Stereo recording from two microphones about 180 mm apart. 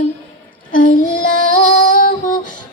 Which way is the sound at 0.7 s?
50° left (ahead or behind).